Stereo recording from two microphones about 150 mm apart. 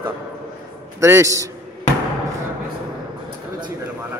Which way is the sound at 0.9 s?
20° right (ahead or behind).